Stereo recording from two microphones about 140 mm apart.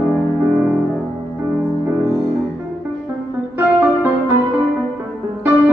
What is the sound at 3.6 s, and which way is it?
Music, 15° right (ahead or behind).